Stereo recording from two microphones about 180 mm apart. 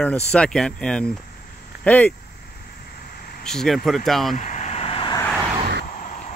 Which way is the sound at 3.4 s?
Centre (ahead or behind).